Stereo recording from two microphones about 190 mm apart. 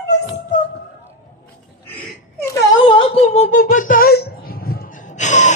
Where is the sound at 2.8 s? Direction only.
25° left (ahead or behind).